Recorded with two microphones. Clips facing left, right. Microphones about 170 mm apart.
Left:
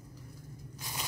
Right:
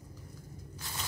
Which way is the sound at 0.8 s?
15° left (ahead or behind).